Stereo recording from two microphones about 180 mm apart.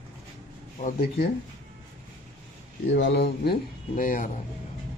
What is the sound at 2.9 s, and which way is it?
Speech, 80° left.